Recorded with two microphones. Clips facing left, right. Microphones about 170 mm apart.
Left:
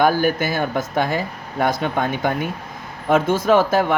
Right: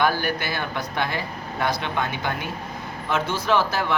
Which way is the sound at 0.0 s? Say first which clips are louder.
Left 6 dB; 45° left (ahead or behind).